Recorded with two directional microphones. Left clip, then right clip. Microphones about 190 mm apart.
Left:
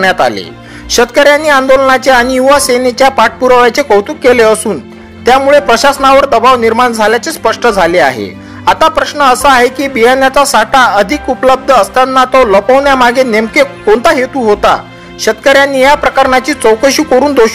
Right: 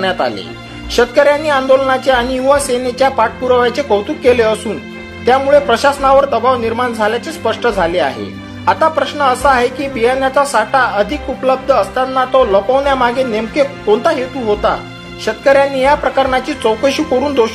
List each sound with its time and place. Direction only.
0.0 s a man's voice: 20° left (ahead or behind)